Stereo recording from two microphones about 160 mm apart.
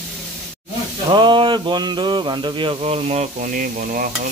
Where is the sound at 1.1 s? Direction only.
30° right (ahead or behind); by 4.1 s 60° right (ahead or behind).